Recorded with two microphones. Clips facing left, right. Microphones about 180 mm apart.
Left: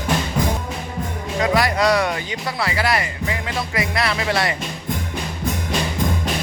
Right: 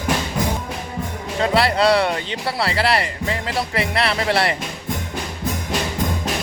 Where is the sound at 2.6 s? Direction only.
30° right (ahead or behind).